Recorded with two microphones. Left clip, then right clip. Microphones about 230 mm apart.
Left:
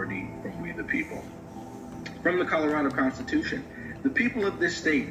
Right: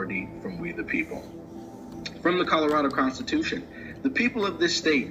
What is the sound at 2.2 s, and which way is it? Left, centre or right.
Speech, right.